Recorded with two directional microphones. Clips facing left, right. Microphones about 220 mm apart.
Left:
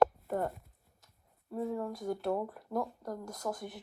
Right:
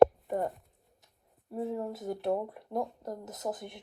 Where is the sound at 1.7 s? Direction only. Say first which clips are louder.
Right 1 dB; 20° right (ahead or behind).